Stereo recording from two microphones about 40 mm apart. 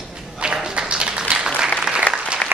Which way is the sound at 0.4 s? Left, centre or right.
Right.